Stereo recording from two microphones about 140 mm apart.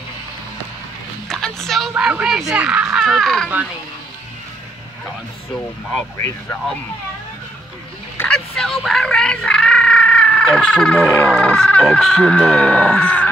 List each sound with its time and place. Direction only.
1.3 s speech: 5° left (ahead or behind)
8.2 s speech: 5° left (ahead or behind)